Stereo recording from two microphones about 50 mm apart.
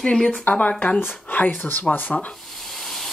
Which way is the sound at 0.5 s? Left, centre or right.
Left.